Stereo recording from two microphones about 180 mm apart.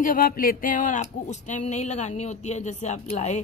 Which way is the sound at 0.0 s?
50° left (ahead or behind).